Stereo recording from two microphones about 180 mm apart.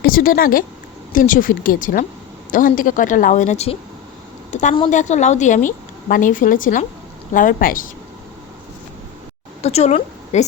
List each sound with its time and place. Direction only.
0.0 s a woman's voice: 50° left (ahead or behind)
9.6 s a woman's voice: 35° left (ahead or behind)